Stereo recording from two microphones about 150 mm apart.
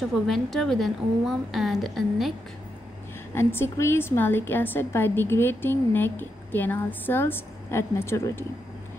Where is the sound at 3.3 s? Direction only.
15° left (ahead or behind).